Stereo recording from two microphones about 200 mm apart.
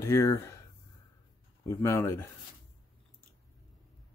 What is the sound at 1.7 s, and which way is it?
Speech, 15° left (ahead or behind).